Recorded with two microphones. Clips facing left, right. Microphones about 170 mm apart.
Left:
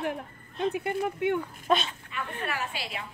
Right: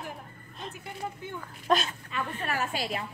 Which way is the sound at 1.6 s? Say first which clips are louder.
Even; centre (ahead or behind).